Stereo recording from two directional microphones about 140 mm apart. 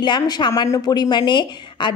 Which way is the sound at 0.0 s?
30° left (ahead or behind).